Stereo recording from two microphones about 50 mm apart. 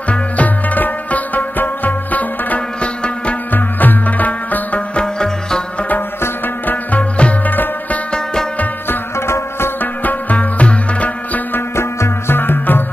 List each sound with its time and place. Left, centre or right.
0.1 s music: left
4.9 s music: centre
6.7 s music: left
9.8 s music: left
11.7 s music: left
12.4 s music: left